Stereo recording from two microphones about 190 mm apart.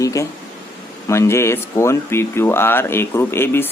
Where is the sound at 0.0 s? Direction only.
15° left (ahead or behind).